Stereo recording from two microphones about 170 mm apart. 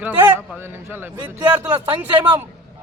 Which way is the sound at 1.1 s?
25° right (ahead or behind).